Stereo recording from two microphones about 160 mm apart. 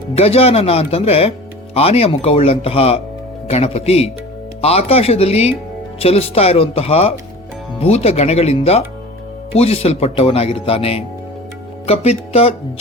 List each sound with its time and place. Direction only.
0.2 s speech: 40° left (ahead or behind)